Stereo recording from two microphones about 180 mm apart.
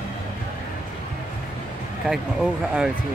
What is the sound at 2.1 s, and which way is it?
Speech, 5° right (ahead or behind).